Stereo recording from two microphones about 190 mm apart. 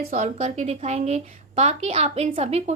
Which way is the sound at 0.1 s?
40° right (ahead or behind).